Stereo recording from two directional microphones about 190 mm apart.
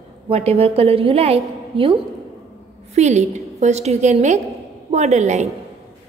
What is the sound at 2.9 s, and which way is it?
A woman's voice, 35° right (ahead or behind).